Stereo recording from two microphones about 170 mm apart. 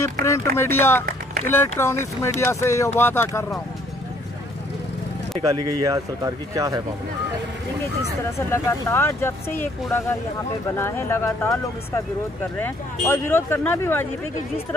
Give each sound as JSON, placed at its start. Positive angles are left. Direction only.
{"t": 0.0, "sound": "speech", "side_deg": 15}
{"t": 5.8, "sound": "speech", "side_deg": -20}
{"t": 8.4, "sound": "speech", "side_deg": 15}